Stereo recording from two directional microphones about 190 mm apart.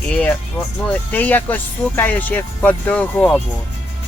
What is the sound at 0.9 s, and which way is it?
Speech, 10° left (ahead or behind).